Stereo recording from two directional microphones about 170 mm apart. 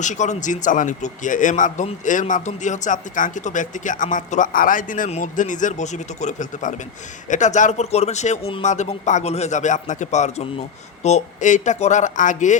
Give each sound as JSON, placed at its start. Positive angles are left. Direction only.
{"t": 0.0, "sound": "speech", "side_deg": 45}